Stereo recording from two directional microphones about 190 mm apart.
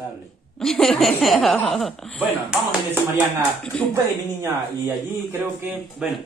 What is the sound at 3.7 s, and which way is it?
Speech, 5° left (ahead or behind).